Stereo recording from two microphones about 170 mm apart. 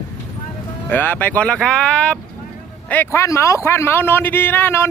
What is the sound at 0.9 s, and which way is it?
A man's voice, 10° left (ahead or behind).